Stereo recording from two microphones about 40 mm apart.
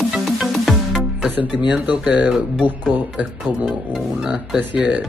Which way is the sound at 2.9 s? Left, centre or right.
Right.